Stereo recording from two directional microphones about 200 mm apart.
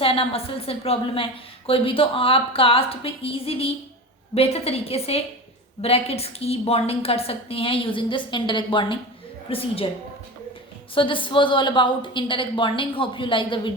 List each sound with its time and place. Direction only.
0.0 s a woman's voice: 30° left (ahead or behind)
10.9 s a woman's voice: 25° left (ahead or behind)